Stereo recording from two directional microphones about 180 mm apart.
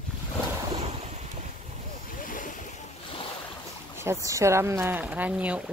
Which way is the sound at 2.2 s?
45° left (ahead or behind).